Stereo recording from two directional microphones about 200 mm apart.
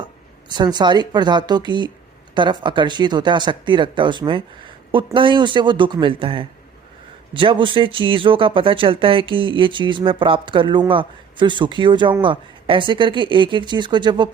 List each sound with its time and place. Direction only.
0.0 s speech: 20° right (ahead or behind)